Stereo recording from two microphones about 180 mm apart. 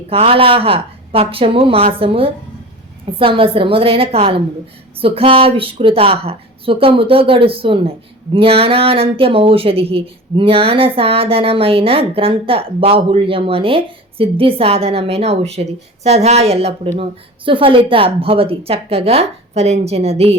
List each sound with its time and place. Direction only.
0.1 s a woman's voice: 30° right (ahead or behind)